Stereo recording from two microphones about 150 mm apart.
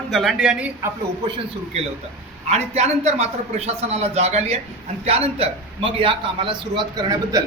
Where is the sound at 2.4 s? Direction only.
45° right (ahead or behind).